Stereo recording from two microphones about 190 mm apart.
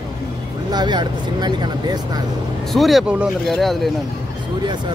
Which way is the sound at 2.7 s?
Centre (ahead or behind).